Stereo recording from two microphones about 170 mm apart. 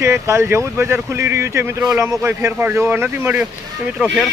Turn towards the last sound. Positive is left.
turn(degrees=-5)  # may be behind; listen again after turning